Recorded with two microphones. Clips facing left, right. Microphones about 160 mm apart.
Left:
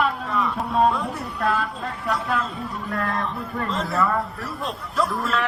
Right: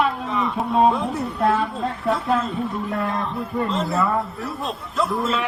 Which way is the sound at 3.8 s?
Centre (ahead or behind).